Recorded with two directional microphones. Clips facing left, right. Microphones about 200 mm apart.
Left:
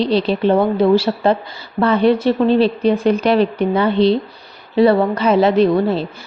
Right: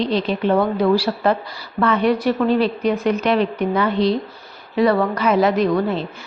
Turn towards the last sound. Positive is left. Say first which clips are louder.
# left 4 dB
turn(degrees=30)  # may be behind; listen again after turning